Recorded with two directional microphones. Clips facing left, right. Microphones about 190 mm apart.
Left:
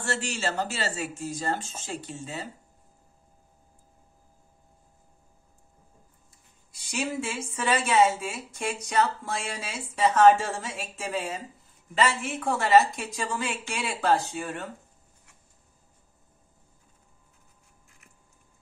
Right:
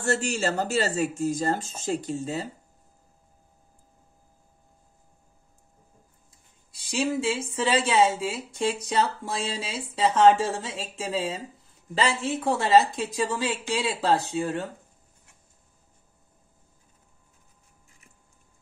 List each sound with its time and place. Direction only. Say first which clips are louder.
0.0 s speech: right 5 dB; 40° right (ahead or behind)
6.7 s speech: right 5 dB; 30° right (ahead or behind)